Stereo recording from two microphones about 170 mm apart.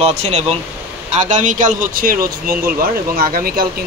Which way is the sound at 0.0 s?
40° right (ahead or behind).